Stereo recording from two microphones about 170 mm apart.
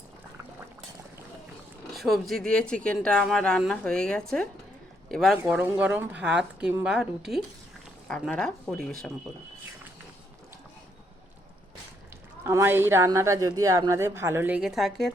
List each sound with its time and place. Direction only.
2.0 s speech: centre (ahead or behind)
5.4 s a woman's voice: 10° right (ahead or behind); by 8.9 s 5° left (ahead or behind)
12.5 s a woman's voice: 15° right (ahead or behind); by 15.1 s centre (ahead or behind)